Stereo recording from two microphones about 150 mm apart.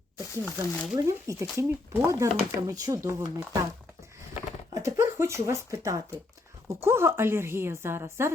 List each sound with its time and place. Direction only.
0.4 s speech: 15° left (ahead or behind)
0.9 s speech: 20° right (ahead or behind)
4.7 s a woman's voice: 20° right (ahead or behind)